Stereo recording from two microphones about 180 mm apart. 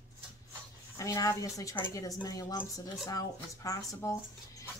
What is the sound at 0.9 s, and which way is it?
A woman's voice, 20° left (ahead or behind).